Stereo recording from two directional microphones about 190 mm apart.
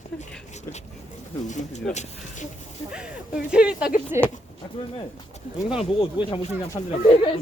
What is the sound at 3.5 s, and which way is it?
Speech, 5° right (ahead or behind).